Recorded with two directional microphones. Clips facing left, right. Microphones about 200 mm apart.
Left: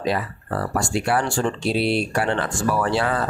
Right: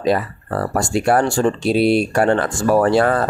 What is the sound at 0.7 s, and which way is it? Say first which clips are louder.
Speech: right 6 dB; 45° right (ahead or behind).